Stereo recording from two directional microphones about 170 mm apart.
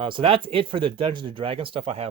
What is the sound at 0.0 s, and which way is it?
Speech, 30° right (ahead or behind).